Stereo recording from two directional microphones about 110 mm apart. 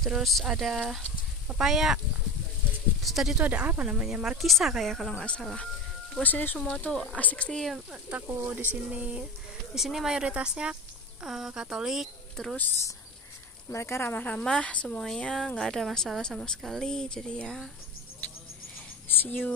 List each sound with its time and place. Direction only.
0.0 s speech: centre (ahead or behind)
3.0 s speech: centre (ahead or behind)
3.4 s a woman's voice: 15° right (ahead or behind); by 7.8 s 5° left (ahead or behind)
7.9 s speech: 15° right (ahead or behind)
12.5 s a woman's voice: 20° left (ahead or behind)
19.0 s speech: 15° left (ahead or behind)